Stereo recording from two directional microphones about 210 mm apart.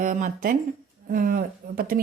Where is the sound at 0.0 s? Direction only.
40° right (ahead or behind).